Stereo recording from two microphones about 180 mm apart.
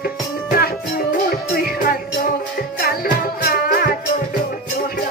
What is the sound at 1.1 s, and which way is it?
Music, 55° left (ahead or behind).